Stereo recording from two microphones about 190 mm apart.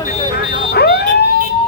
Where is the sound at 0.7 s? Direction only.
55° left (ahead or behind).